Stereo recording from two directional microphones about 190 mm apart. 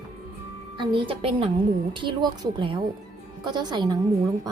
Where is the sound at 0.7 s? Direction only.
25° right (ahead or behind).